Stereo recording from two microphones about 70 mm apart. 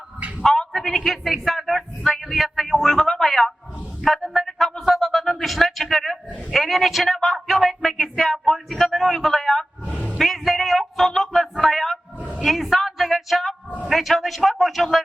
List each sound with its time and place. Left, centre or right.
0.4 s a man's voice: centre
4.0 s a sound: centre
4.9 s a man's voice: centre
9.8 s vehicle: centre
10.2 s a sound: centre
12.4 s a woman's voice: centre